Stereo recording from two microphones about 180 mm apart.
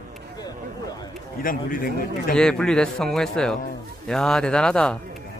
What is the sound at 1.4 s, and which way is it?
Speech, 50° left (ahead or behind).